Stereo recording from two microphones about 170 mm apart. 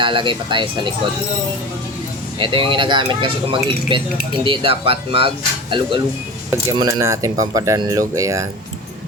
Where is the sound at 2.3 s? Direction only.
30° right (ahead or behind).